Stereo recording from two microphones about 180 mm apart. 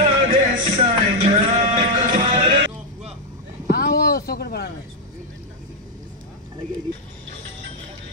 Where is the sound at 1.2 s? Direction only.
35° right (ahead or behind).